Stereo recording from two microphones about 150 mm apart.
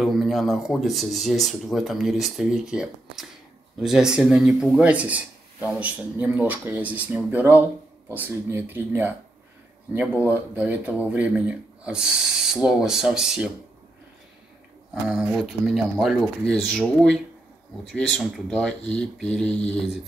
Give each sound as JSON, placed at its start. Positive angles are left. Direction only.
{"t": 0.0, "sound": "speech", "side_deg": 0}
{"t": 10.3, "sound": "speech", "side_deg": -10}
{"t": 15.0, "sound": "speech", "side_deg": 0}